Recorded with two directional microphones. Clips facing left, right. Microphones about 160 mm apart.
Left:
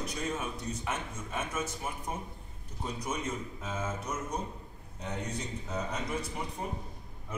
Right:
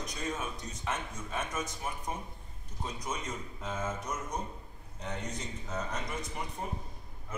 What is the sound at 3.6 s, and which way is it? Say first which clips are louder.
A man's voice: right 2 dB; 5° left (ahead or behind).